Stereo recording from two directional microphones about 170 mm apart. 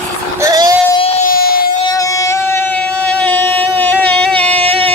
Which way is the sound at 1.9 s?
20° left (ahead or behind).